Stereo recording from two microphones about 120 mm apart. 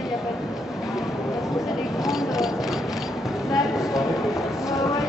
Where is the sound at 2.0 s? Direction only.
5° right (ahead or behind).